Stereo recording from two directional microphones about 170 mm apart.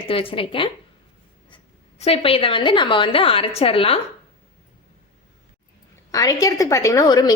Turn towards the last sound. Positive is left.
turn(degrees=25)  # may be behind; listen again after turning